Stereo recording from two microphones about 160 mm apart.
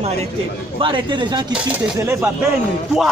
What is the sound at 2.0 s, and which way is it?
Speech, 15° right (ahead or behind).